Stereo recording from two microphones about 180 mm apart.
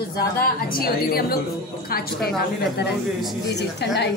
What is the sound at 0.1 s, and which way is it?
A woman's voice, 55° left (ahead or behind).